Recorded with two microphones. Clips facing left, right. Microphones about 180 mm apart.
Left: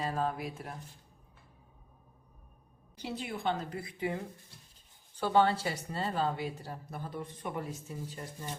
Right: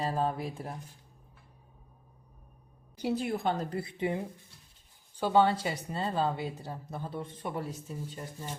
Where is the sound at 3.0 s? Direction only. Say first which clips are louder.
Right 7 dB; 50° right (ahead or behind); by 7.5 s 30° right (ahead or behind).